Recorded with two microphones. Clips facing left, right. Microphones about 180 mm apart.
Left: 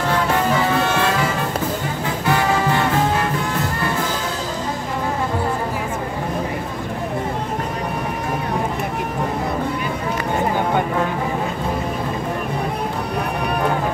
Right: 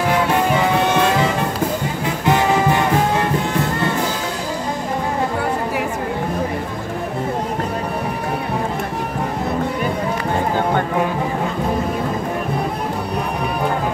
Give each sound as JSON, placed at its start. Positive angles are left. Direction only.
{"t": 2.2, "sound": "music", "side_deg": -20}